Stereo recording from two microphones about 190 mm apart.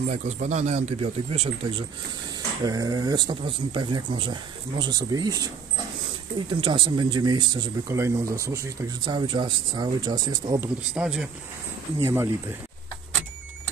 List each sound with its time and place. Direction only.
0.1 s speech: 35° right (ahead or behind)
2.6 s speech: 20° right (ahead or behind)
11.0 s speech: 5° right (ahead or behind)